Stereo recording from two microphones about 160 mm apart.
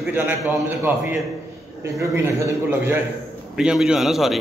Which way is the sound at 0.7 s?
10° right (ahead or behind).